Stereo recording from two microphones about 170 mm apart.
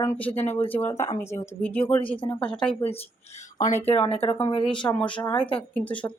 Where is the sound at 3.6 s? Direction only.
45° left (ahead or behind).